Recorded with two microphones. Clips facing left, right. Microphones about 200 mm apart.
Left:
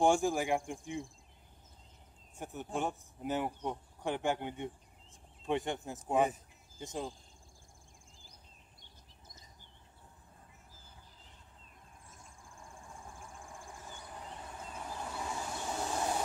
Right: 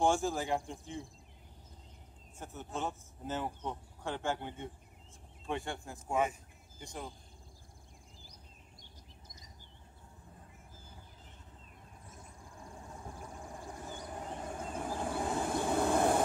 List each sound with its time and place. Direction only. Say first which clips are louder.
0.0 s speech: left 2 dB; 15° left (ahead or behind)
2.3 s speech: left 3 dB; 15° left (ahead or behind)
14.4 s vehicle: right 8 dB; 50° right (ahead or behind)